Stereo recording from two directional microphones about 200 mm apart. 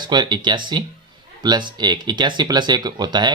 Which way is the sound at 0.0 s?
20° right (ahead or behind).